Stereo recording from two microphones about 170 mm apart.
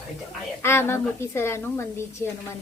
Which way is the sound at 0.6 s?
15° left (ahead or behind).